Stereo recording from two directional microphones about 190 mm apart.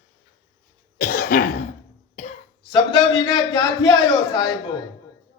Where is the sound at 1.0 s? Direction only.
45° left (ahead or behind).